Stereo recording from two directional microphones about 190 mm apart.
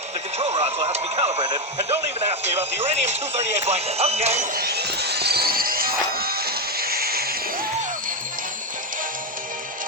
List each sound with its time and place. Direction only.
0.3 s radio: 35° right (ahead or behind)
1.5 s speech: 25° right (ahead or behind)
4.5 s music: 55° right (ahead or behind)